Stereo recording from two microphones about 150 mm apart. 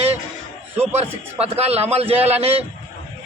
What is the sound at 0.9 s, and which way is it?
A man's voice, 45° right (ahead or behind).